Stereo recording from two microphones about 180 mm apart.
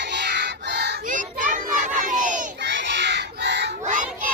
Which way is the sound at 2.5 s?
75° right (ahead or behind).